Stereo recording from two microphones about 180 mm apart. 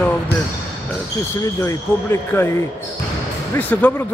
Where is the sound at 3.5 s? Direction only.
10° left (ahead or behind).